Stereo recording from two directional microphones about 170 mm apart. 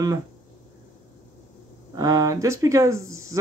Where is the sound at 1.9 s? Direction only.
20° right (ahead or behind).